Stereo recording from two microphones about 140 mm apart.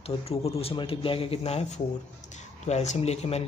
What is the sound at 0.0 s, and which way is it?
Speech, 45° left (ahead or behind).